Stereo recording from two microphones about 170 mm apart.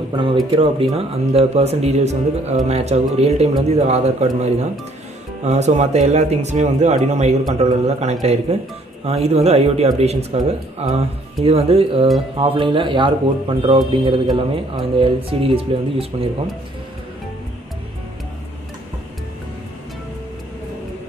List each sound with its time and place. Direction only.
0.5 s speech: 35° right (ahead or behind)